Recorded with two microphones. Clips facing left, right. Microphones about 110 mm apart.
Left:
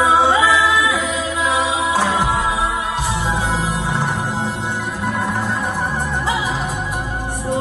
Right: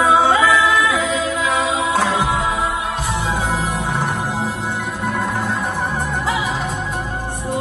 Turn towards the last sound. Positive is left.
turn(degrees=15)  # may be behind; listen again after turning